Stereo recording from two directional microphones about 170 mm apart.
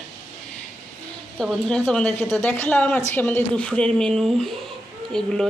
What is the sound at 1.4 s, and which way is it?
A woman's voice, 5° left (ahead or behind).